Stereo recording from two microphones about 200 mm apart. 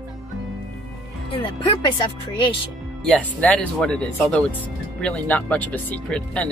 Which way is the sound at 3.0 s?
5° left (ahead or behind).